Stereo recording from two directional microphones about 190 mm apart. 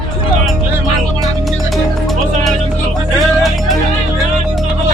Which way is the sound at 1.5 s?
Centre (ahead or behind).